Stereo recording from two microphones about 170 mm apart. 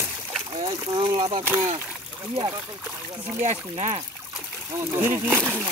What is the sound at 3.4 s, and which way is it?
Speech, 45° right (ahead or behind).